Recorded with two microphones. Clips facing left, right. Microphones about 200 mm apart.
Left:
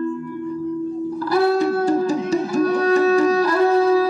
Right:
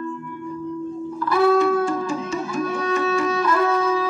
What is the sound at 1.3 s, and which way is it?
Music, 40° left (ahead or behind).